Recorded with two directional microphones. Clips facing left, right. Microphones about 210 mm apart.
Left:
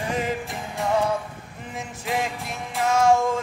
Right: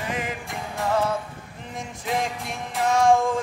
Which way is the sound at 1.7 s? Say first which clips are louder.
Even; 5° left (ahead or behind).